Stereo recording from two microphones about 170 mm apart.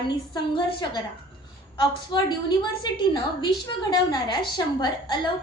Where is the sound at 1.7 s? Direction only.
30° left (ahead or behind).